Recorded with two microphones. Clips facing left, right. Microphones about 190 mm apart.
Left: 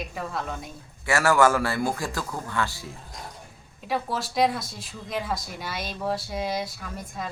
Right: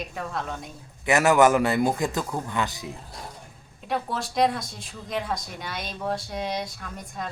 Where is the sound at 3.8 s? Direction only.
Centre (ahead or behind).